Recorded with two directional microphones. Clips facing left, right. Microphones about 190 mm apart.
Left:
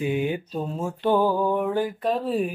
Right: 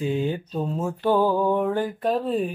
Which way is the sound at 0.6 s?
5° left (ahead or behind).